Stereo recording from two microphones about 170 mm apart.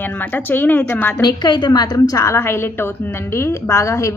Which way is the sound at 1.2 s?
25° left (ahead or behind).